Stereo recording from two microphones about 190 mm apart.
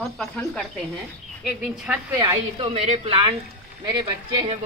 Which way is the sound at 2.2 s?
20° right (ahead or behind).